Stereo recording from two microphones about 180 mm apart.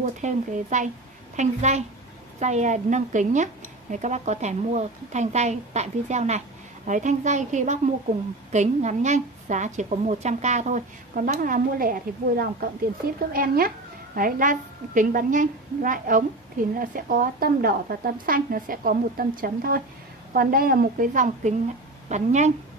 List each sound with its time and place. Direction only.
0.0 s a woman's voice: 40° right (ahead or behind)